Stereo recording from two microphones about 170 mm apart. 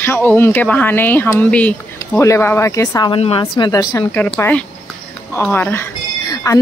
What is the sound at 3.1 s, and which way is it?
Speech, 30° left (ahead or behind).